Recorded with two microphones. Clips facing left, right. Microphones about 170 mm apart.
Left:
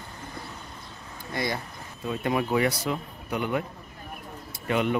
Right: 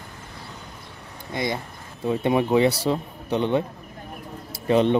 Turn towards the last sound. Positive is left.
turn(degrees=-30)  # may be behind; listen again after turning